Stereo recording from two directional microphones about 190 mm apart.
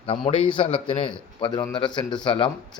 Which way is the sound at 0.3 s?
30° left (ahead or behind).